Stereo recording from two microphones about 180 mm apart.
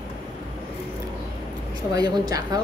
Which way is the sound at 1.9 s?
20° right (ahead or behind).